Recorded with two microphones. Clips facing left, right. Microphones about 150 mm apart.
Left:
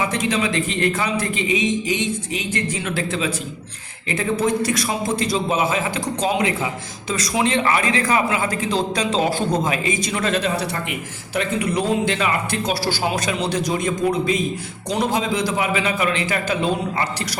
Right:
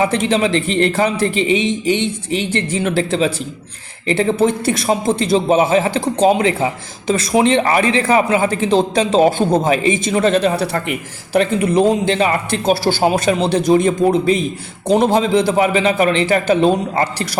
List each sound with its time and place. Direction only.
0.0 s a man's voice: 30° right (ahead or behind)
14.8 s a man's voice: 55° right (ahead or behind)
15.1 s a man's voice: 30° right (ahead or behind)